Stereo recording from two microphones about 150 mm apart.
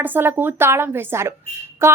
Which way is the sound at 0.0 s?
15° right (ahead or behind).